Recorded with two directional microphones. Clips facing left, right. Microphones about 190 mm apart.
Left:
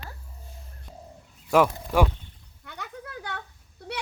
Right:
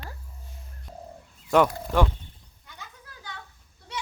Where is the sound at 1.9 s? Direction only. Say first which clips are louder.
Left 1 dB; 10° left (ahead or behind).